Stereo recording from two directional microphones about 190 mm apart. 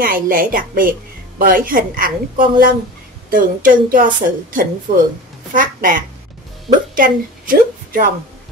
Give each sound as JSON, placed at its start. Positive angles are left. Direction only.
{"t": 0.0, "sound": "a woman's voice", "side_deg": -45}